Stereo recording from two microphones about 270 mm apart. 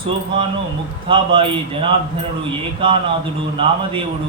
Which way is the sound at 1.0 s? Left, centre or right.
Centre.